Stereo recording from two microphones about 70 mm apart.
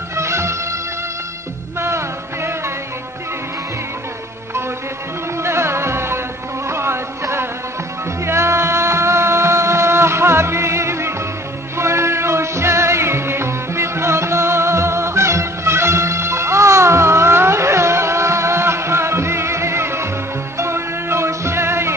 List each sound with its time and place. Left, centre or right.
0.1 s music: right
1.8 s music: right
5.4 s music: right
6.7 s a sound: right
8.2 s music: right